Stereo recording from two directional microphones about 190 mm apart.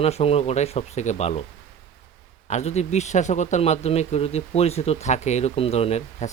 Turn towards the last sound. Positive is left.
turn(degrees=35)  # may be behind; listen again after turning